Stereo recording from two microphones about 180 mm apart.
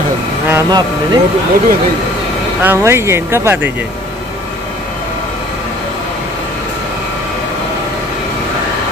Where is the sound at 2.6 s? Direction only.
10° right (ahead or behind).